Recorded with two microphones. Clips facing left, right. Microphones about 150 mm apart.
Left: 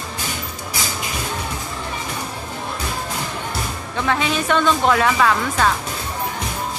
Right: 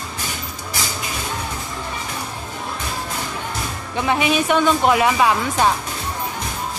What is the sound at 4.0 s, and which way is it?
Speech, 15° right (ahead or behind).